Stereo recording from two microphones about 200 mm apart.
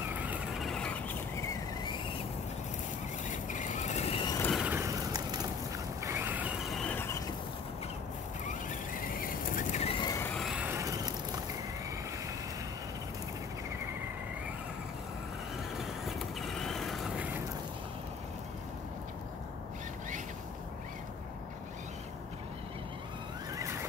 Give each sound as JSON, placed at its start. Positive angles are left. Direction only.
{"t": 0.2, "sound": "vehicle", "side_deg": -5}
{"t": 3.3, "sound": "vehicle", "side_deg": 40}
{"t": 4.4, "sound": "vehicle", "side_deg": 5}
{"t": 4.6, "sound": "vehicle", "side_deg": -15}
{"t": 8.5, "sound": "vehicle", "side_deg": 45}
{"t": 10.1, "sound": "vehicle", "side_deg": 5}
{"t": 15.8, "sound": "vehicle", "side_deg": 0}
{"t": 23.5, "sound": "vehicle", "side_deg": -15}